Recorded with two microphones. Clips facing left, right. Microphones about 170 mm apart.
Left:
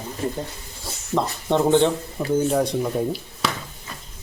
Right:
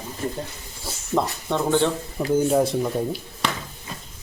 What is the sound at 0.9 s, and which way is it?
Dog, centre (ahead or behind).